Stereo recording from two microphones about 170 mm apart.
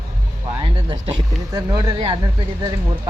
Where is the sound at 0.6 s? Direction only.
25° right (ahead or behind).